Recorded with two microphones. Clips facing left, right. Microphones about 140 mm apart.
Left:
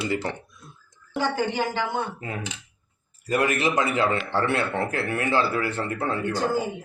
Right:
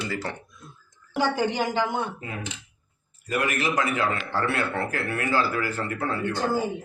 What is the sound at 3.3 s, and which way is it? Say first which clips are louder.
A man's voice: left 3 dB; 30° left (ahead or behind).